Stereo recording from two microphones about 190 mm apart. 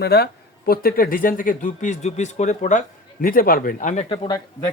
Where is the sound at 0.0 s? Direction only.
55° left (ahead or behind).